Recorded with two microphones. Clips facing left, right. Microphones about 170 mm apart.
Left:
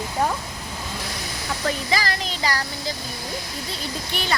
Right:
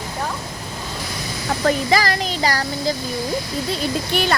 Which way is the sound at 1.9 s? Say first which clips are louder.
Right 6 dB; 45° right (ahead or behind).